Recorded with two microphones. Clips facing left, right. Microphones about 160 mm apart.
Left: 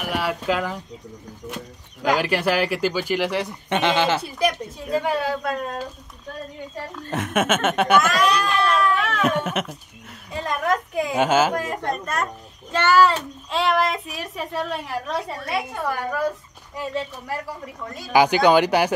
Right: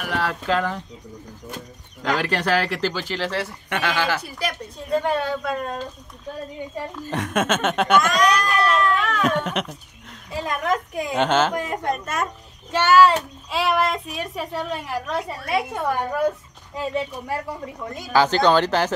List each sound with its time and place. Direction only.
0.1 s speech: 10° left (ahead or behind)
2.1 s speech: 10° left (ahead or behind)
4.7 s a woman's voice: 5° left (ahead or behind)
7.0 s a woman's voice: centre (ahead or behind)
11.7 s a woman's voice: 5° right (ahead or behind)
13.5 s a woman's voice: 5° right (ahead or behind)
15.4 s speech: 20° right (ahead or behind)
18.1 s speech: 10° left (ahead or behind)